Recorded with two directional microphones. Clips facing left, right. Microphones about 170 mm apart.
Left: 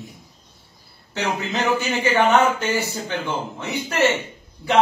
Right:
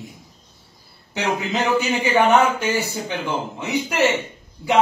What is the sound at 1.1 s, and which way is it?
Speech, 15° right (ahead or behind).